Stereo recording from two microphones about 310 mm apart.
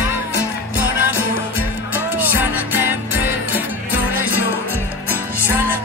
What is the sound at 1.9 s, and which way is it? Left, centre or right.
Music, centre.